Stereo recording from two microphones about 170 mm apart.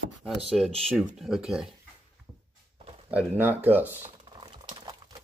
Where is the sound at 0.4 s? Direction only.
Centre (ahead or behind).